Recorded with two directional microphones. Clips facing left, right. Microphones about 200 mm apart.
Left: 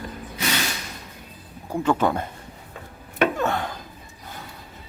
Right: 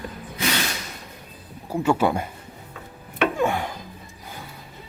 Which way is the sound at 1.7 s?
10° right (ahead or behind).